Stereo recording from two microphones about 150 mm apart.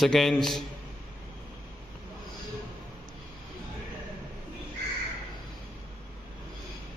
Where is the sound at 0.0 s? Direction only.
Centre (ahead or behind).